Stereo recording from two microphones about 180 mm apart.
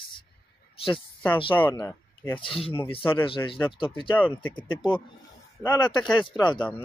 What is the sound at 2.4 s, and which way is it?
Speech, 30° left (ahead or behind).